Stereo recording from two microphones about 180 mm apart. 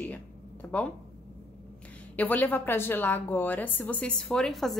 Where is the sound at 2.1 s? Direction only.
10° left (ahead or behind).